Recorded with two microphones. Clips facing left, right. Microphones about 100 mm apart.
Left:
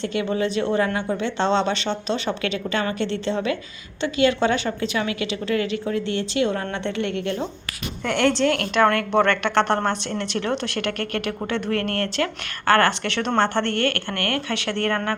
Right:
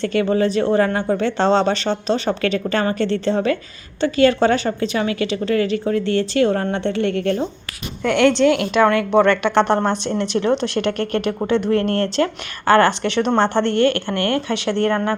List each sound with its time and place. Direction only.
0.0 s a woman's voice: 45° right (ahead or behind)
8.0 s a woman's voice: centre (ahead or behind); by 15.1 s 20° right (ahead or behind)